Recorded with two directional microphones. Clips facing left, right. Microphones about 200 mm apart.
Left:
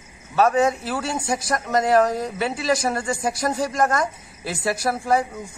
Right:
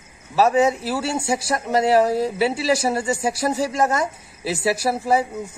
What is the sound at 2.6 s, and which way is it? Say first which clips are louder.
Speech: right 2 dB; 5° right (ahead or behind).